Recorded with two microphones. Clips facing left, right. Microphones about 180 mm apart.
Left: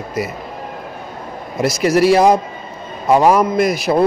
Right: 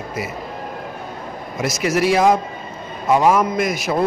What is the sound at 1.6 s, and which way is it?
A man's voice, 35° left (ahead or behind).